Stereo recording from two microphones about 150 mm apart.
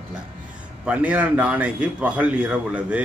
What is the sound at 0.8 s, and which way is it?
A man's voice, 10° right (ahead or behind).